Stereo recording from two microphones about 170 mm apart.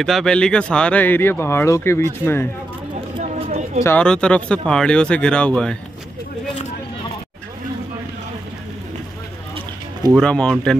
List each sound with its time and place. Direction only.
0.0 s speech: 5° left (ahead or behind)
3.4 s a sound: 40° right (ahead or behind)
3.8 s speech: 10° left (ahead or behind)
10.1 s speech: 5° left (ahead or behind)